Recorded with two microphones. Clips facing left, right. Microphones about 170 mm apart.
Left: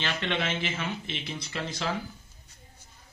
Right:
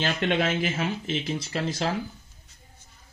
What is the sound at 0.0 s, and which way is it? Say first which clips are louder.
Speech: right 6 dB; 40° right (ahead or behind).